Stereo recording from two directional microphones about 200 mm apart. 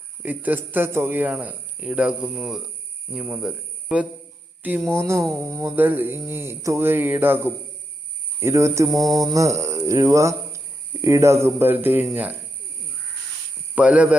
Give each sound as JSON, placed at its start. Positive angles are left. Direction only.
{"t": 0.2, "sound": "speech", "side_deg": -10}
{"t": 13.7, "sound": "speech", "side_deg": -5}